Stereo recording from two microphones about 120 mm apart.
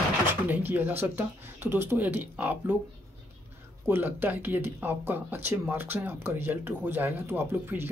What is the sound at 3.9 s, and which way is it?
Speech, 15° right (ahead or behind).